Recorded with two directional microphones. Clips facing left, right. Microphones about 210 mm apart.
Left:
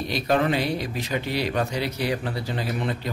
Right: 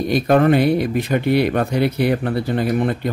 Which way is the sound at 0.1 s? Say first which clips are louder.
Right 8 dB; 55° right (ahead or behind).